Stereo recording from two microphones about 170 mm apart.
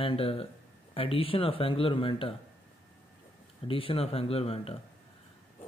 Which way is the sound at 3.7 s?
30° left (ahead or behind).